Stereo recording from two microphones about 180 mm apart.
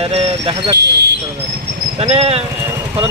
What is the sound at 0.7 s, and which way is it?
Speech, 70° right (ahead or behind).